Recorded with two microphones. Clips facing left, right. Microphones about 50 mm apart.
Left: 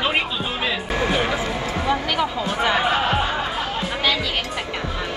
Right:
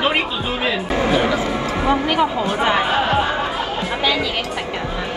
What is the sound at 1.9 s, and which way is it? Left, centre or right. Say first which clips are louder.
Speech: right 5 dB; centre.